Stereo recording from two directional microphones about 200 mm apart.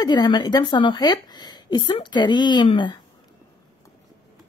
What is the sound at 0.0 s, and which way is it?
A woman's voice, 20° left (ahead or behind).